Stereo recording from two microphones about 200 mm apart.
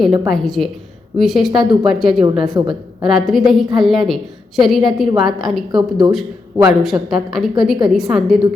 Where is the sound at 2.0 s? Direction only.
Centre (ahead or behind).